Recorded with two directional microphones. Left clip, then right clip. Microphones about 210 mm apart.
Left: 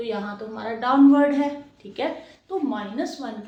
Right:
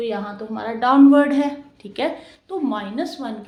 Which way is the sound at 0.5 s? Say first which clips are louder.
Right 5 dB; 50° right (ahead or behind).